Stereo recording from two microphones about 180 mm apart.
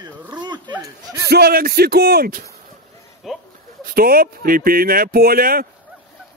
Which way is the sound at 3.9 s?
55° right (ahead or behind).